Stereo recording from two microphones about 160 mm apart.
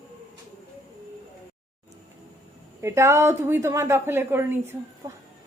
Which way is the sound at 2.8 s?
15° right (ahead or behind).